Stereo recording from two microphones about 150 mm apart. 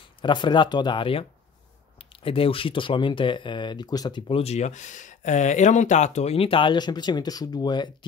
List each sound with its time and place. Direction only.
0.2 s speech: 30° left (ahead or behind)
2.2 s speech: 35° left (ahead or behind)